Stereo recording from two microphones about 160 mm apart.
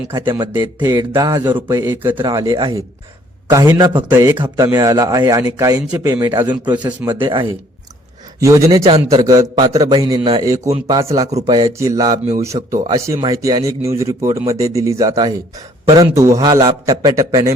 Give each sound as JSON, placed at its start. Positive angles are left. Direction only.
{"t": 0.1, "sound": "a man's voice", "side_deg": -25}
{"t": 1.8, "sound": "a man's voice", "side_deg": -15}
{"t": 2.2, "sound": "a man's voice", "side_deg": -25}
{"t": 6.7, "sound": "a man's voice", "side_deg": -25}
{"t": 8.4, "sound": "a man's voice", "side_deg": -20}